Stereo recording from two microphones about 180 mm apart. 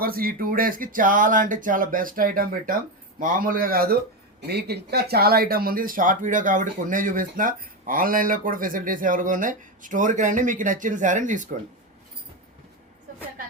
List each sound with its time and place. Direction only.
0.0 s speech: 55° right (ahead or behind)